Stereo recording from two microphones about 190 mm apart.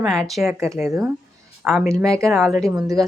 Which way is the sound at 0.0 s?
Centre (ahead or behind).